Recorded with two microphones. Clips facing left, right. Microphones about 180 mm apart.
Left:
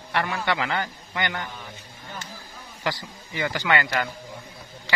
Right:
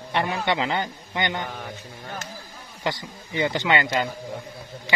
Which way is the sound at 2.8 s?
20° right (ahead or behind).